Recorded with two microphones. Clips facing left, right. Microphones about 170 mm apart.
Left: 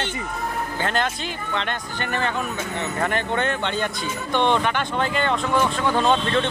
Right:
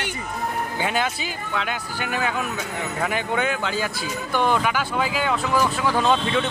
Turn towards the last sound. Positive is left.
turn(degrees=-5)  # may be behind; listen again after turning